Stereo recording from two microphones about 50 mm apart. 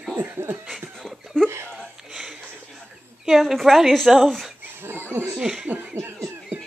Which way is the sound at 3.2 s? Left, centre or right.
Centre.